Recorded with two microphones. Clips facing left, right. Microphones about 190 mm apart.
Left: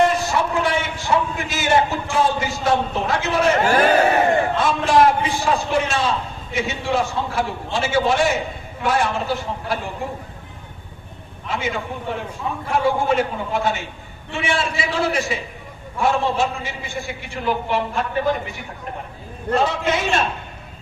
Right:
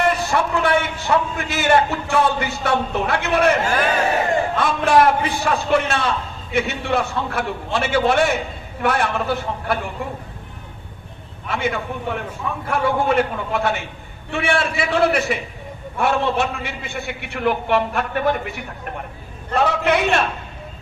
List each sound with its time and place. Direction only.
0.0 s a man's voice: 60° right (ahead or behind)
3.7 s speech: 30° left (ahead or behind)
4.5 s a man's voice: 60° right (ahead or behind)
11.4 s a man's voice: 60° right (ahead or behind)
19.5 s a man's voice: 60° right (ahead or behind)